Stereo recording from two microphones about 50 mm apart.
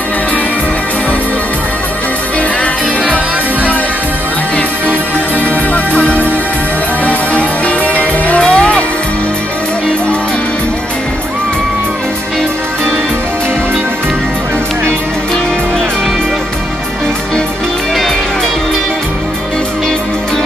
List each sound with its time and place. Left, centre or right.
7.1 s music: left